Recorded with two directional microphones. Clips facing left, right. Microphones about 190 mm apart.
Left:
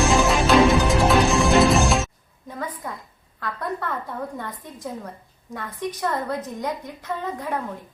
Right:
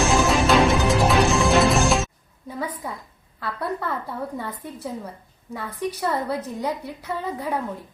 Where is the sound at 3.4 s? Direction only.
10° right (ahead or behind).